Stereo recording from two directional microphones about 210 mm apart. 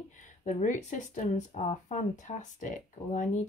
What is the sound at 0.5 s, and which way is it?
Speech, 35° left (ahead or behind).